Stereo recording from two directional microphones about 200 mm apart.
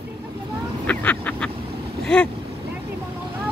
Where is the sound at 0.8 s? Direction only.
10° left (ahead or behind).